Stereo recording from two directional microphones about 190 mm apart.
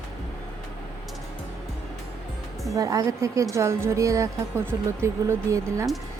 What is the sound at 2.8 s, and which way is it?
A woman's voice, 15° right (ahead or behind).